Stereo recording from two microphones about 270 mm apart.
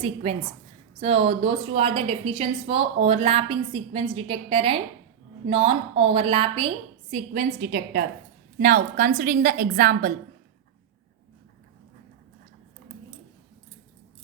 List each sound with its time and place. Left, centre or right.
0.0 s a woman's voice: right
7.1 s a woman's voice: right